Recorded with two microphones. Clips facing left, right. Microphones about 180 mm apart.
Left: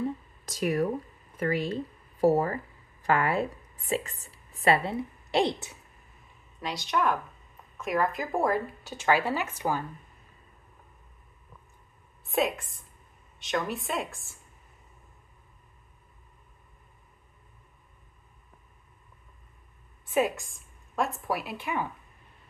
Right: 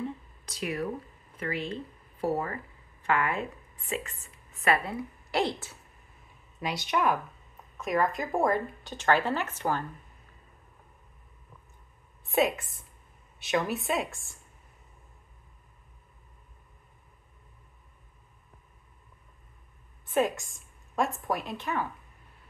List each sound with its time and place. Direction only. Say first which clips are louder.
0.5 s speech: left 5 dB; 45° left (ahead or behind); by 5.8 s 20° left (ahead or behind)
6.6 s speech: even; 10° right (ahead or behind); by 9.8 s 10° left (ahead or behind)
12.3 s a woman's voice: right 1 dB; centre (ahead or behind)
20.1 s a woman's voice: even; 10° left (ahead or behind)